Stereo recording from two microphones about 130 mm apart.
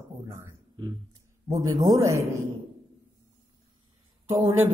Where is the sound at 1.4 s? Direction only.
25° right (ahead or behind).